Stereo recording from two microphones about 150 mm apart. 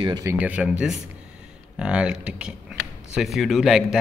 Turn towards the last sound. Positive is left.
turn(degrees=-5)  # may be behind; listen again after turning